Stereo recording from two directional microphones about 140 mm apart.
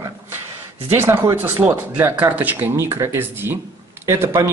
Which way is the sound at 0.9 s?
20° right (ahead or behind).